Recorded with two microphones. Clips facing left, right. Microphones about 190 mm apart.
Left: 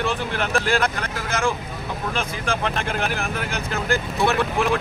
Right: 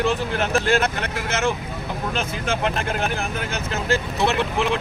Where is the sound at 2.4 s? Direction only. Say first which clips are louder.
Right 2 dB; 35° right (ahead or behind).